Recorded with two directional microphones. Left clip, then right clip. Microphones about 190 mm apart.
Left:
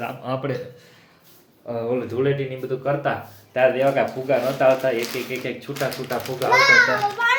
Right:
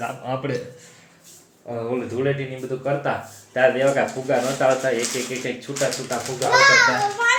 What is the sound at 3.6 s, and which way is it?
Speech, 5° right (ahead or behind).